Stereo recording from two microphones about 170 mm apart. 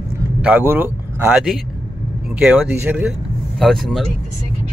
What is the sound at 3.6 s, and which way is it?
Speech, centre (ahead or behind).